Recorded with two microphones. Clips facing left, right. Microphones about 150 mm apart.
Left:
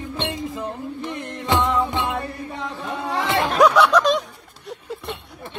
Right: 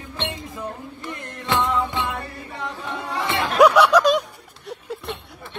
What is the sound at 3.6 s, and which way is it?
Snicker, centre (ahead or behind).